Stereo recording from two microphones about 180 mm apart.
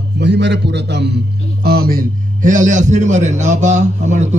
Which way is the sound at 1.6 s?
60° right (ahead or behind).